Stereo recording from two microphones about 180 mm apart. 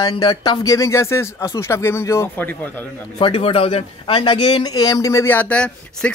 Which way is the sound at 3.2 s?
30° left (ahead or behind).